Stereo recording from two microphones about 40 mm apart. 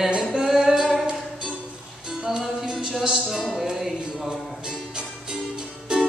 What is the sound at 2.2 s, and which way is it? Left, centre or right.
Music, centre.